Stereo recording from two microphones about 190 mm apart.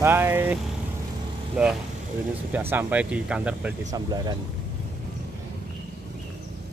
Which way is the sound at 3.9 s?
20° right (ahead or behind).